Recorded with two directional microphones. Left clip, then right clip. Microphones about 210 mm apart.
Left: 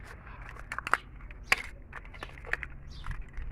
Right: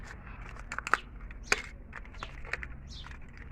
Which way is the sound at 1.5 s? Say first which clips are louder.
Left 2 dB; 20° left (ahead or behind).